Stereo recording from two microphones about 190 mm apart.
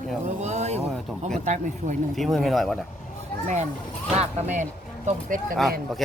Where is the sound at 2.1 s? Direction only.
Centre (ahead or behind).